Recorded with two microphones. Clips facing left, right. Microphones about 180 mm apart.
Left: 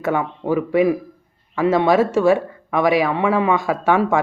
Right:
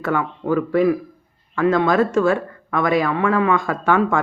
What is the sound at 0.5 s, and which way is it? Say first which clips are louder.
Speech: even; 10° left (ahead or behind).